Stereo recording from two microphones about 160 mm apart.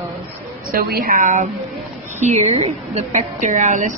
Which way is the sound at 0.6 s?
70° right (ahead or behind).